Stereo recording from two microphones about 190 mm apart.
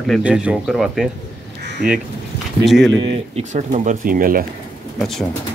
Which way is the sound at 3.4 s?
40° right (ahead or behind).